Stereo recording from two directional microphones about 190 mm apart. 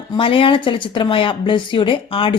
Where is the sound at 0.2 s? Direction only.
25° left (ahead or behind).